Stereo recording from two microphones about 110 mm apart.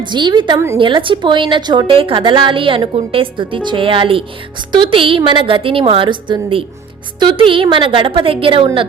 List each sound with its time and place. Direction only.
0.0 s a woman's voice: 45° right (ahead or behind)